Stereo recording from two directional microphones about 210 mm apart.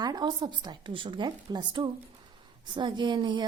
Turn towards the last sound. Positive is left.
turn(degrees=-20)  # may be behind; listen again after turning